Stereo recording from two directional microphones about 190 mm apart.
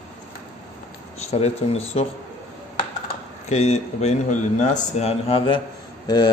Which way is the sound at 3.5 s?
35° left (ahead or behind).